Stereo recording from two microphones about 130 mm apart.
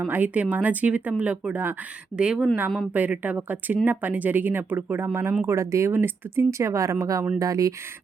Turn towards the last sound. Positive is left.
turn(degrees=-25)  # may be behind; listen again after turning